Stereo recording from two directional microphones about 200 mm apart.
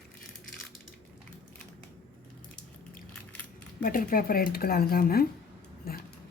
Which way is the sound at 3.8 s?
45° left (ahead or behind).